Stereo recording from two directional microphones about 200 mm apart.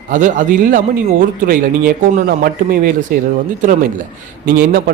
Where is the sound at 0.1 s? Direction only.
40° right (ahead or behind).